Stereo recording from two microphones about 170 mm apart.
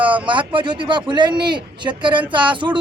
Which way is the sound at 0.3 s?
30° right (ahead or behind).